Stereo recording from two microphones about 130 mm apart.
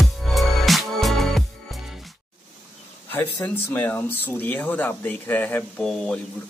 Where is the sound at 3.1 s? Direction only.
15° left (ahead or behind).